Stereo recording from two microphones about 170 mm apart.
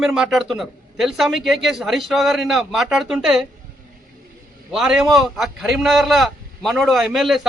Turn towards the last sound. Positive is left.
turn(degrees=0)  # may be behind; listen again after turning